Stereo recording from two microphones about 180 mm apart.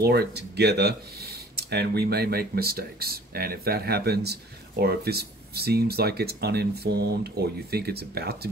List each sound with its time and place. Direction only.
0.0 s speech: 65° right (ahead or behind)